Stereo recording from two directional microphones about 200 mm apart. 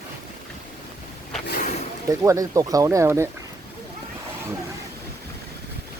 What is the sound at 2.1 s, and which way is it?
Speech, 15° right (ahead or behind).